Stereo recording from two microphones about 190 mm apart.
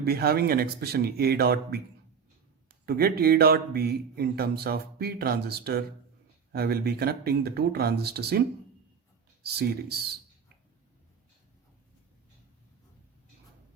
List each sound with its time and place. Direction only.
0.0 s a man's voice: 55° right (ahead or behind)